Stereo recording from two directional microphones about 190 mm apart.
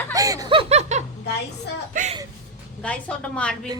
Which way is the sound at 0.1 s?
15° right (ahead or behind).